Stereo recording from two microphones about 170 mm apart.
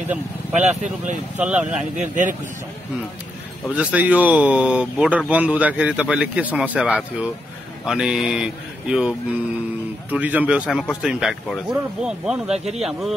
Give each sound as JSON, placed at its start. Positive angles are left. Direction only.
{"t": 0.5, "sound": "speech", "side_deg": -45}
{"t": 1.4, "sound": "speech", "side_deg": -5}
{"t": 2.0, "sound": "speech", "side_deg": -50}
{"t": 3.7, "sound": "speech", "side_deg": -10}